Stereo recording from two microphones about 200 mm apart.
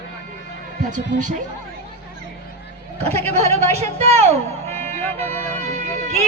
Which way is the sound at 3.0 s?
30° right (ahead or behind).